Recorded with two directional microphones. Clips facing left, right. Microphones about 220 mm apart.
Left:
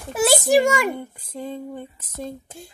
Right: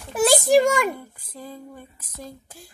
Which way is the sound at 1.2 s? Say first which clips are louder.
Left 7 dB; 25° left (ahead or behind).